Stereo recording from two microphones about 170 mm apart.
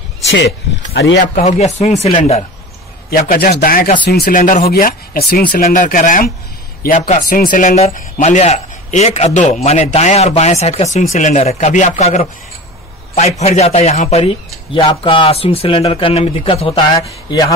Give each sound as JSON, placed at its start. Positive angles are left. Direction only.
{"t": 0.3, "sound": "speech", "side_deg": 80}
{"t": 1.2, "sound": "a man's voice", "side_deg": 45}
{"t": 3.1, "sound": "a man's voice", "side_deg": 60}